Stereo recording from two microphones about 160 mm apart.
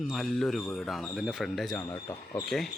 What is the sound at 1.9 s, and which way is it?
Speech, 20° left (ahead or behind).